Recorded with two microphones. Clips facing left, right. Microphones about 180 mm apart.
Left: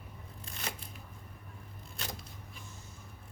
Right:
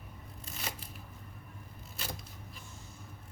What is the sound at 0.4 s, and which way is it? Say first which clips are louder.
Scissors: even; 5° right (ahead or behind).